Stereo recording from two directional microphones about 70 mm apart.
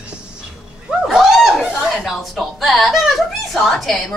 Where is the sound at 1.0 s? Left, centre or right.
Centre.